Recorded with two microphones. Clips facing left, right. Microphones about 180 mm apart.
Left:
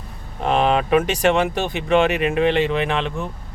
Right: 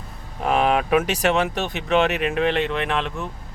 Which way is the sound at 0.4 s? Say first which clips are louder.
Left 1 dB; 5° right (ahead or behind).